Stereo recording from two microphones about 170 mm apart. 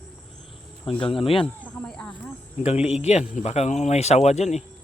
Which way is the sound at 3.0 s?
40° left (ahead or behind).